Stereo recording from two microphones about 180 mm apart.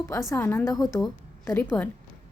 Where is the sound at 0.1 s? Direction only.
15° left (ahead or behind).